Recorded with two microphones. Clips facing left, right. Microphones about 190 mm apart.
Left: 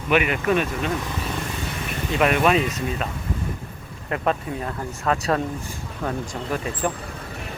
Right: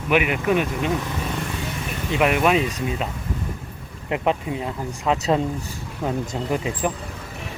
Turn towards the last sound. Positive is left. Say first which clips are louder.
# right 2 dB
turn(degrees=-15)  # may be behind; listen again after turning